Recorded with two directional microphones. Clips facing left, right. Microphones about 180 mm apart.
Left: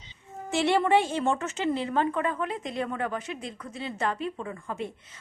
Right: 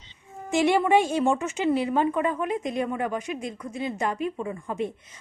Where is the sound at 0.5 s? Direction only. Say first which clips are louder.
Right 2 dB; 15° right (ahead or behind).